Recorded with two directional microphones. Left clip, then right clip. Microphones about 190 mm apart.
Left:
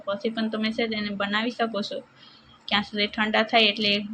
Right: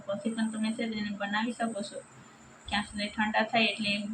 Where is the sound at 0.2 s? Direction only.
40° left (ahead or behind).